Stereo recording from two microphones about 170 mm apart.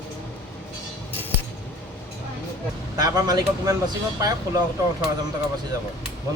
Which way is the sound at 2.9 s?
20° right (ahead or behind).